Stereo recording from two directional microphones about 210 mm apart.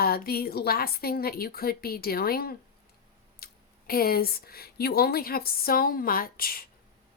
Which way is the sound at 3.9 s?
45° left (ahead or behind).